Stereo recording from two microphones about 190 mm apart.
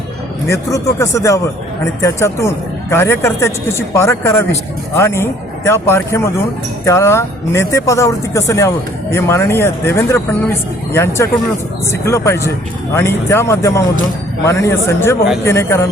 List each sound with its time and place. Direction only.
0.4 s speech: 15° left (ahead or behind)